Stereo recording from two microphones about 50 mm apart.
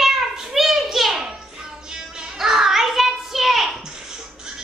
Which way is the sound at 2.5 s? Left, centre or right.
Centre.